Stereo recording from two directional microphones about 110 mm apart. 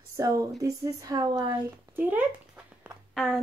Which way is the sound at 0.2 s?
30° right (ahead or behind).